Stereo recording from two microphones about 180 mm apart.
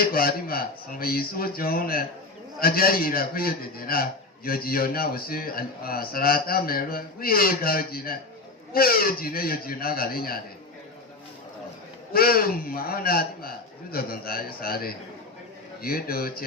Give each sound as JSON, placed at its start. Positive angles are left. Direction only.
{"t": 0.0, "sound": "a man's voice", "side_deg": 55}
{"t": 12.1, "sound": "a man's voice", "side_deg": 55}